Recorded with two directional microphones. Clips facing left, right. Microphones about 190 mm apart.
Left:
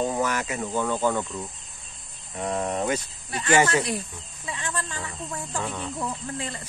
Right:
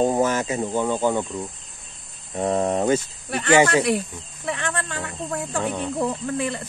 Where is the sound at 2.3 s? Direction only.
35° right (ahead or behind).